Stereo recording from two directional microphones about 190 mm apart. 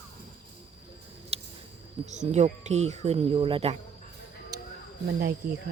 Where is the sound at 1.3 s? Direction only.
30° right (ahead or behind).